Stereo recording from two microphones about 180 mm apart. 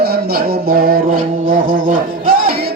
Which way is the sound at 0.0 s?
60° right (ahead or behind).